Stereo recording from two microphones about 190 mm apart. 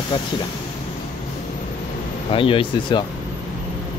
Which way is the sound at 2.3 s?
30° left (ahead or behind).